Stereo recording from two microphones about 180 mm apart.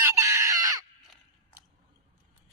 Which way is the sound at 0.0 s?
20° right (ahead or behind).